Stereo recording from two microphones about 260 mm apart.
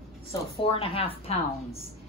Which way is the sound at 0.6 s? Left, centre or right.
Left.